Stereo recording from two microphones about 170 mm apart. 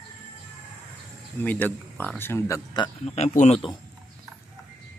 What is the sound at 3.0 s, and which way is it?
Speech, 40° left (ahead or behind).